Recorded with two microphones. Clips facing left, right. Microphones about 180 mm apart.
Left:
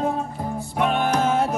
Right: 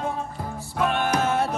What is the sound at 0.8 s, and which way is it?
Music, 15° left (ahead or behind).